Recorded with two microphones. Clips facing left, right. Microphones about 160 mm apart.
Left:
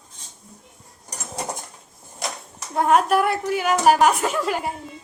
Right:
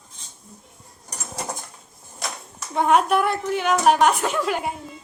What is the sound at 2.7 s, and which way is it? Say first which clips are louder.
A woman's voice: left 1 dB; centre (ahead or behind).